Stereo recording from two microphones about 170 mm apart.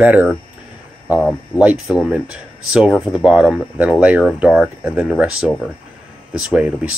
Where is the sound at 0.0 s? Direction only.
10° right (ahead or behind).